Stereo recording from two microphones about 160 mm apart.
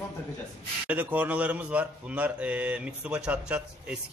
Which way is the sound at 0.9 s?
10° right (ahead or behind).